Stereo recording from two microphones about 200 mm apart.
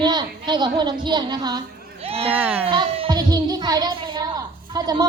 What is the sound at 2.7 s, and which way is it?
A child's voice, 25° right (ahead or behind).